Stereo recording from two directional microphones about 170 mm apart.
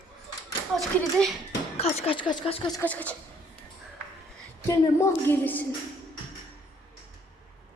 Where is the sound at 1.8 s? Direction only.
30° left (ahead or behind).